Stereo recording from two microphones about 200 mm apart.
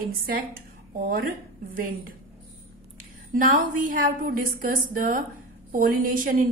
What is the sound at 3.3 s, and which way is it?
A woman's voice, 40° right (ahead or behind).